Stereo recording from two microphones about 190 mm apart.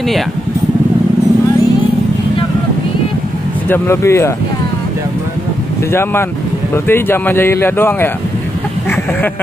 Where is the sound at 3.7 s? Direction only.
15° left (ahead or behind).